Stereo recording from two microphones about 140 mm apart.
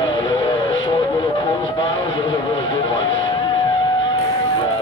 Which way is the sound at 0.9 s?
40° left (ahead or behind).